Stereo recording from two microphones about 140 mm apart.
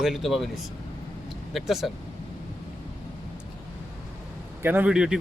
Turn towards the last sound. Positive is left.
turn(degrees=-5)  # may be behind; listen again after turning